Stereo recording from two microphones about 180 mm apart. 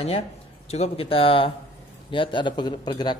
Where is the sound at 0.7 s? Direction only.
35° left (ahead or behind).